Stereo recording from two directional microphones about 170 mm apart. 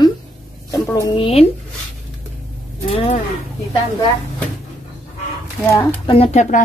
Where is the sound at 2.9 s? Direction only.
35° left (ahead or behind).